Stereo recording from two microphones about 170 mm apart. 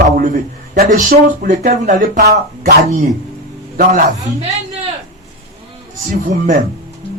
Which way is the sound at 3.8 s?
55° right (ahead or behind).